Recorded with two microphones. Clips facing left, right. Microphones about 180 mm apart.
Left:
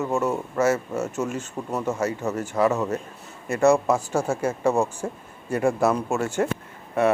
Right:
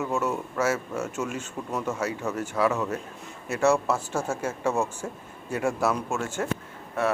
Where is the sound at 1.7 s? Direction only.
10° left (ahead or behind).